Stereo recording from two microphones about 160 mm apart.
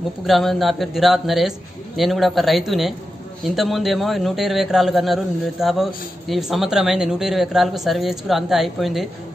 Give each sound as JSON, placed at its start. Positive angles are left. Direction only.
{"t": 0.3, "sound": "speech", "side_deg": 0}